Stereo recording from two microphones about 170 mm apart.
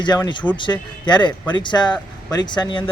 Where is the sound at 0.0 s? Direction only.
25° left (ahead or behind).